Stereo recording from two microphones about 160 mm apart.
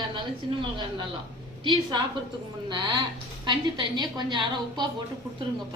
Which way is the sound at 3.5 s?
30° right (ahead or behind).